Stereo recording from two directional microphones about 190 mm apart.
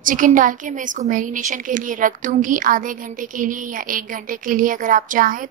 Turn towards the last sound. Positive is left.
turn(degrees=-45)  # may be behind; listen again after turning